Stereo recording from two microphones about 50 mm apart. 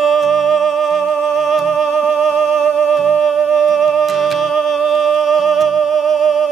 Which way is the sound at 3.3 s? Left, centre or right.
Centre.